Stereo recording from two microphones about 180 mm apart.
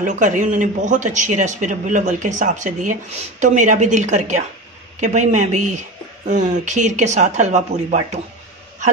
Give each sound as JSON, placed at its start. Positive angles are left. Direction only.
{"t": 0.0, "sound": "speech", "side_deg": -45}